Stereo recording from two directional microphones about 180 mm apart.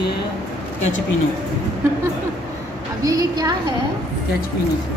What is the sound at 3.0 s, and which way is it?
Speech, 20° right (ahead or behind).